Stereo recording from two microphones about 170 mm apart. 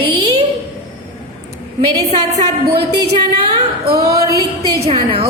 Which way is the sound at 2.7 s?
75° right (ahead or behind).